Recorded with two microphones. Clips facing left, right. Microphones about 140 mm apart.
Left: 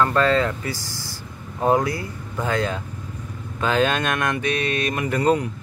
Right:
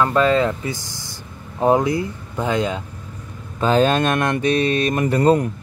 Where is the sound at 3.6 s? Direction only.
35° right (ahead or behind).